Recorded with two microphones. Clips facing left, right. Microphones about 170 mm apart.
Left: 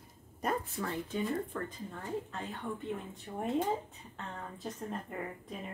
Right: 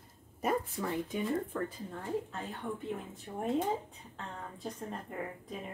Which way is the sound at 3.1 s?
Centre (ahead or behind).